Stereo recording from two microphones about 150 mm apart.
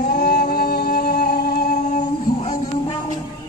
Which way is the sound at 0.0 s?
75° left (ahead or behind).